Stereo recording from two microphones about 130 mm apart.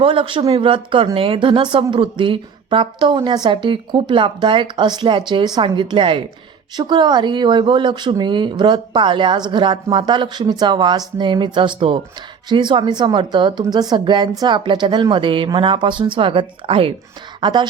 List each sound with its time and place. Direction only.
0.0 s speech: 45° right (ahead or behind)